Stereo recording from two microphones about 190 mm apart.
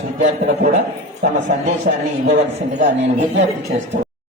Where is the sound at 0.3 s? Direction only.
40° right (ahead or behind).